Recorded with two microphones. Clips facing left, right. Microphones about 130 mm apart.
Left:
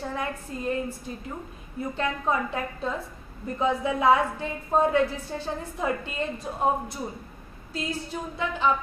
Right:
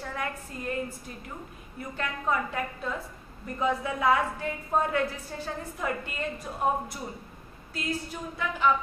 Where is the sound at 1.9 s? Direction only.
25° left (ahead or behind).